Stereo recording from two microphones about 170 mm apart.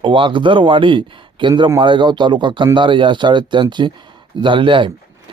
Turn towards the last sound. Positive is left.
turn(degrees=-30)  # may be behind; listen again after turning